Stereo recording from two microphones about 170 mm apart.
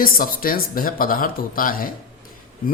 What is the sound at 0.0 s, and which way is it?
Speech, 60° left (ahead or behind).